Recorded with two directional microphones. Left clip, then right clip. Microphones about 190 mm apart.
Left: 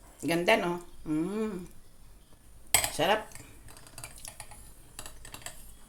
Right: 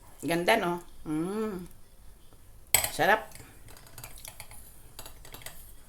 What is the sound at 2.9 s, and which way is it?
Speech, 20° right (ahead or behind).